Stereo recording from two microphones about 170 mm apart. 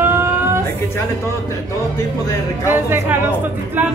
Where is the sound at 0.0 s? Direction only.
15° right (ahead or behind).